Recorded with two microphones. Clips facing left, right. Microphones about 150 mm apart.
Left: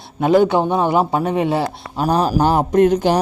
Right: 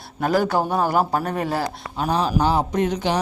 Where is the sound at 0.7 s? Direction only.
Centre (ahead or behind).